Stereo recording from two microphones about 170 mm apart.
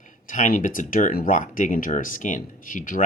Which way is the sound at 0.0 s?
50° left (ahead or behind).